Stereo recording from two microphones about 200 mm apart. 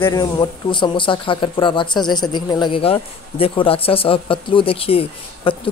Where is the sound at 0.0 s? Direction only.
20° left (ahead or behind).